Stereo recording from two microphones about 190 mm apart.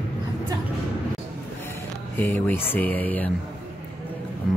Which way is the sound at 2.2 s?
10° left (ahead or behind).